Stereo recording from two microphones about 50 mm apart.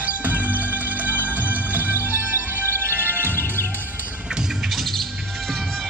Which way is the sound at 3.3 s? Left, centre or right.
Left.